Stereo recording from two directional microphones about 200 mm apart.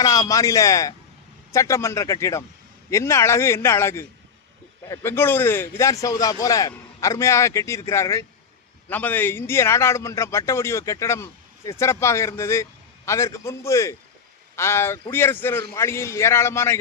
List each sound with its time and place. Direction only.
0.0 s a man's voice: 15° left (ahead or behind)